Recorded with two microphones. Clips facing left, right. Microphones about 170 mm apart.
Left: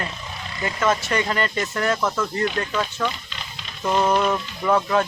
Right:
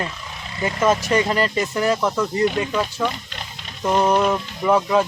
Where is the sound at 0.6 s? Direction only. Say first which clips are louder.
Right 3 dB; 20° right (ahead or behind).